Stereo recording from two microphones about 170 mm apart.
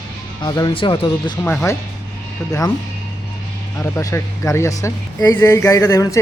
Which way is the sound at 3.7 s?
15° left (ahead or behind).